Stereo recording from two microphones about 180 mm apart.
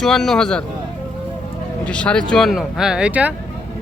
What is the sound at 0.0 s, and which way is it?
Speech, centre (ahead or behind).